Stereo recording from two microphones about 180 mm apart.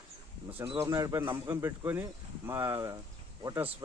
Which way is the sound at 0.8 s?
20° right (ahead or behind).